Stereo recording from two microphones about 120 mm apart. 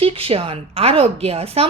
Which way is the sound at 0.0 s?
50° right (ahead or behind).